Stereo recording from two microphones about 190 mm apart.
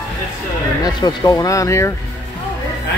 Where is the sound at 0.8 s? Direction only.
20° left (ahead or behind).